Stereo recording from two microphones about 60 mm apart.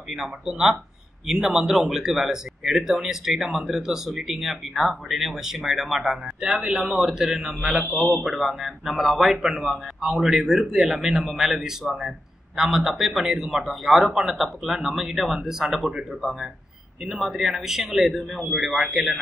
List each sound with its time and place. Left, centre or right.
0.1 s speech: centre